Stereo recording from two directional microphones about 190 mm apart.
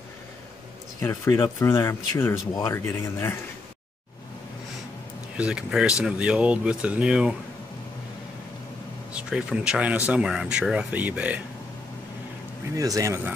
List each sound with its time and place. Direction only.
1.0 s speech: 15° left (ahead or behind)
5.4 s speech: 5° right (ahead or behind)
9.1 s speech: 5° right (ahead or behind)
12.7 s speech: 15° right (ahead or behind)